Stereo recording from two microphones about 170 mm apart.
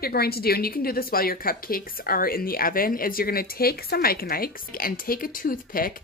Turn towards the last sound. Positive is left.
turn(degrees=55)  # may be behind; listen again after turning